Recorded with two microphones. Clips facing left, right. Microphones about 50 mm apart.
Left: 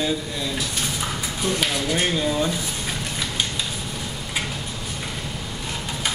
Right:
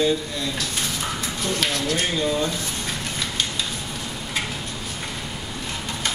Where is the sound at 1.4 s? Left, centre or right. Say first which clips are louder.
Left 1 dB; centre.